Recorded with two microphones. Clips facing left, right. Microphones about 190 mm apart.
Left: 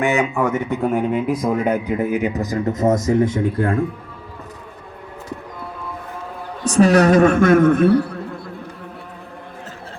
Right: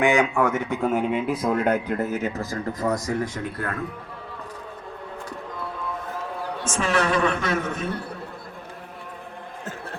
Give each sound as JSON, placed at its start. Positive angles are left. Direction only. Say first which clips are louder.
{"t": 0.0, "sound": "speech", "louder": "left 1 dB", "side_deg": 5}
{"t": 6.7, "sound": "a woman's voice", "louder": "left 11 dB", "side_deg": 40}